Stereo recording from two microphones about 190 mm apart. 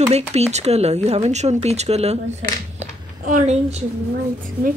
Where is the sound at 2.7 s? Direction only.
40° right (ahead or behind).